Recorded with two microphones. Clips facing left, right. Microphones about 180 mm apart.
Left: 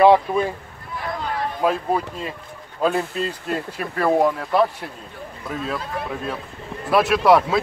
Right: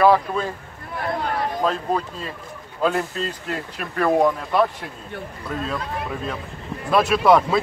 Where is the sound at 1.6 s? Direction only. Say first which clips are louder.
Left 4 dB; 10° left (ahead or behind).